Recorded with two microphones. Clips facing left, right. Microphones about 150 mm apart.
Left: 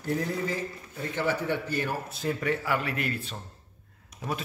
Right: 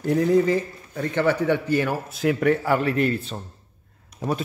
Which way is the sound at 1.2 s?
70° right (ahead or behind).